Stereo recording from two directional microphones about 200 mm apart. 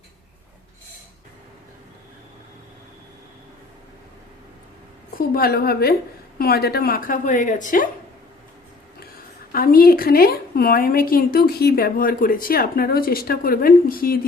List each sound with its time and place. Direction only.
5.1 s a woman's voice: 45° left (ahead or behind)
9.5 s a woman's voice: 45° left (ahead or behind)